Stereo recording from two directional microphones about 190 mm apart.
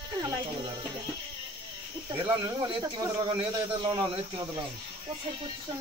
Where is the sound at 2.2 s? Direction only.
25° right (ahead or behind).